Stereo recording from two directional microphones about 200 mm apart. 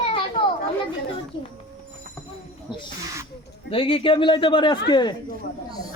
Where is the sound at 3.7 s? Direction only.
25° left (ahead or behind).